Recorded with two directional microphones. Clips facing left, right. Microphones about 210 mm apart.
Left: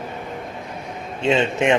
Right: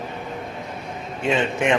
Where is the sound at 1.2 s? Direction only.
25° left (ahead or behind).